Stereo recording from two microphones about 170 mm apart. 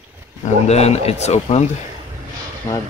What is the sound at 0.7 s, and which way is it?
Speech, 40° left (ahead or behind).